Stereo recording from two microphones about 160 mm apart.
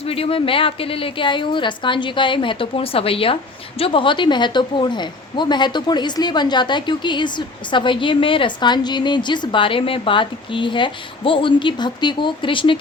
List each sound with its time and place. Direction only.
0.0 s a woman's voice: 35° left (ahead or behind)